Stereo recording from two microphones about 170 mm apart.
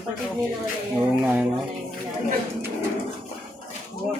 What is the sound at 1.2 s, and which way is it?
Speech, 5° right (ahead or behind).